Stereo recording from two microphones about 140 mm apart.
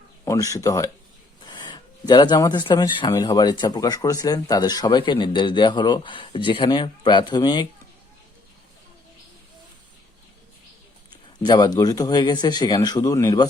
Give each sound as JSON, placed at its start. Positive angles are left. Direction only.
{"t": 0.3, "sound": "speech", "side_deg": 25}
{"t": 11.4, "sound": "speech", "side_deg": 30}